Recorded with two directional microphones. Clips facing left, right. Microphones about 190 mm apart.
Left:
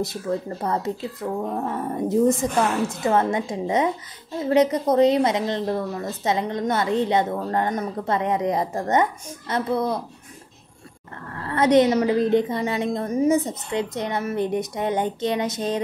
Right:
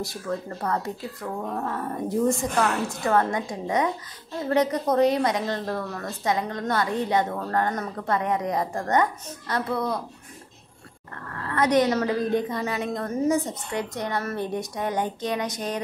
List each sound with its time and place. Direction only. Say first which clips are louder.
0.0 s a woman's voice: left 4 dB; 20° left (ahead or behind)
11.4 s a woman's voice: left 4 dB; 25° left (ahead or behind)
13.0 s a woman's voice: left 3 dB; 15° left (ahead or behind)